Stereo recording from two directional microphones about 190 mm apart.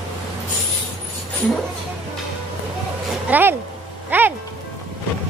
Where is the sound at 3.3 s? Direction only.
10° right (ahead or behind).